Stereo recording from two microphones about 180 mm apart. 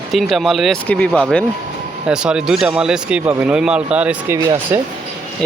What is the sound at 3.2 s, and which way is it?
Speech, 20° right (ahead or behind).